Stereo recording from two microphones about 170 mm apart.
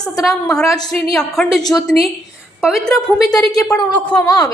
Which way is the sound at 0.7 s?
25° left (ahead or behind).